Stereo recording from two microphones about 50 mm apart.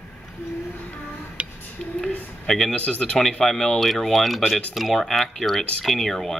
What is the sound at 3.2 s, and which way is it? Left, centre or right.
Speech, centre.